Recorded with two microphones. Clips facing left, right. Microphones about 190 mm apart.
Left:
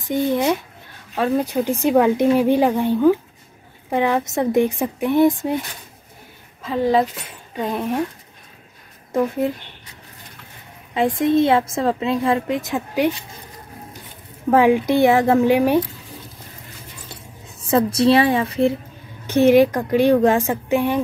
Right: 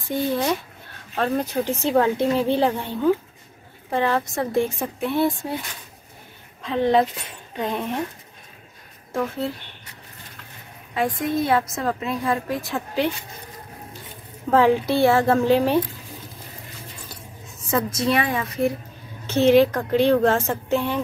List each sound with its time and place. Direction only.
0.1 s a woman's voice: 15° left (ahead or behind)
6.6 s a woman's voice: 5° left (ahead or behind)
9.1 s speech: 15° left (ahead or behind)
11.0 s a woman's voice: 25° left (ahead or behind)
14.5 s speech: 15° left (ahead or behind)
17.1 s speech: 30° left (ahead or behind)
19.2 s speech: 15° left (ahead or behind)